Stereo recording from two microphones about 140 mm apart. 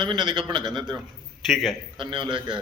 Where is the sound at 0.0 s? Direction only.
35° right (ahead or behind).